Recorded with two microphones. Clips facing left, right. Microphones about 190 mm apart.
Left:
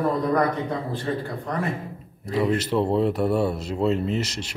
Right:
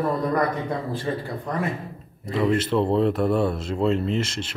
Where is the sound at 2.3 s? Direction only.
5° left (ahead or behind).